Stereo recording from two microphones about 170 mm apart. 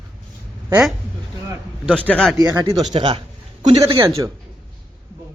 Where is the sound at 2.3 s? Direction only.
20° right (ahead or behind).